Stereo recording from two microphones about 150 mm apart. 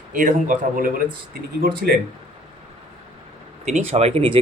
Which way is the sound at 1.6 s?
80° right.